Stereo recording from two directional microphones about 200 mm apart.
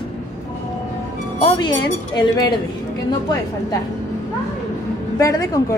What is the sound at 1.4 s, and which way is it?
Speech, 20° left (ahead or behind).